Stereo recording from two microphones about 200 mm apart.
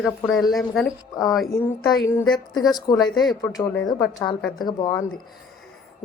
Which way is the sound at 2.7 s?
20° left (ahead or behind).